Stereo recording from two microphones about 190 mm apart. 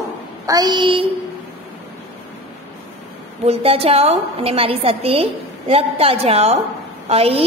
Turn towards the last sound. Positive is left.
turn(degrees=-30)  # may be behind; listen again after turning